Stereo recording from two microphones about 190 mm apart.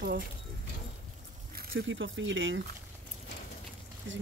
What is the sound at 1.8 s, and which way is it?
Speech, 85° right.